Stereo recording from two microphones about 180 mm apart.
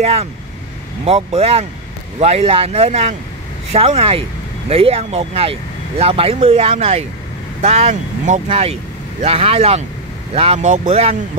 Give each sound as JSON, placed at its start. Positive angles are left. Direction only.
{"t": 0.0, "sound": "speech", "side_deg": -35}